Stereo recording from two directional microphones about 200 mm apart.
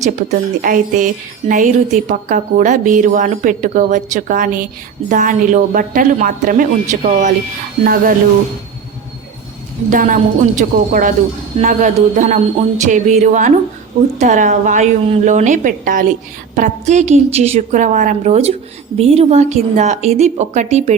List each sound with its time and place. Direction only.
0.0 s music: 35° right (ahead or behind)
9.9 s music: 40° right (ahead or behind)